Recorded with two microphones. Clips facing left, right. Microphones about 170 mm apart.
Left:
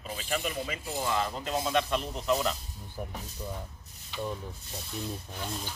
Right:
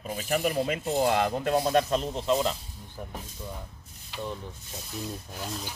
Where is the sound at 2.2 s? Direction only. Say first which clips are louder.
Right 2 dB; 20° right (ahead or behind).